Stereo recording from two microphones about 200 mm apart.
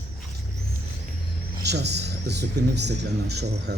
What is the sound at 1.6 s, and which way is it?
Speech, 55° right (ahead or behind).